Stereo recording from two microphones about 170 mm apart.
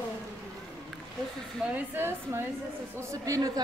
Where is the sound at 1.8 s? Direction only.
15° right (ahead or behind).